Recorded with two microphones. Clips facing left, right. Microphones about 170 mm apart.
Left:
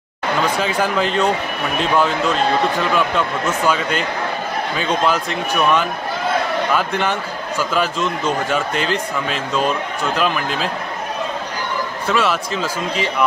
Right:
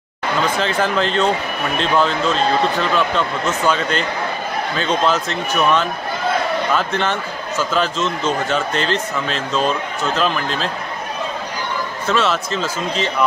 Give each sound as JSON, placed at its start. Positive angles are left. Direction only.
{"t": 0.6, "sound": "speech", "side_deg": 10}
{"t": 12.1, "sound": "speech", "side_deg": 10}